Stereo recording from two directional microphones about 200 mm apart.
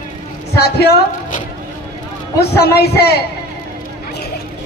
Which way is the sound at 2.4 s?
55° left (ahead or behind).